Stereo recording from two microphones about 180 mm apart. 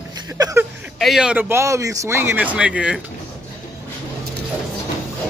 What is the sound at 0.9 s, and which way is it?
A man's voice, centre (ahead or behind).